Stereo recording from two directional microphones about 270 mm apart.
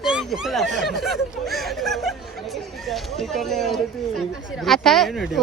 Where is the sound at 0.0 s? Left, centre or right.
Centre.